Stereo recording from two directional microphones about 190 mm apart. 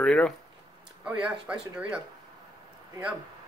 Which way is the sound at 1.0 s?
5° right (ahead or behind).